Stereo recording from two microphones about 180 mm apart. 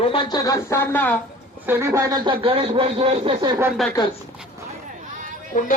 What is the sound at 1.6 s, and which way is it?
Speech, 15° right (ahead or behind).